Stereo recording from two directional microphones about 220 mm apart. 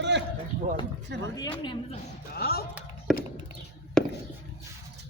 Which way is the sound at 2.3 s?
45° left (ahead or behind).